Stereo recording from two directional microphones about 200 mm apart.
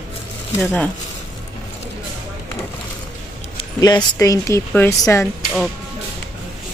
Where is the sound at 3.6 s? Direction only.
20° left (ahead or behind).